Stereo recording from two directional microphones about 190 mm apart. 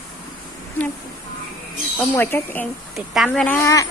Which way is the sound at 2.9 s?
Centre (ahead or behind).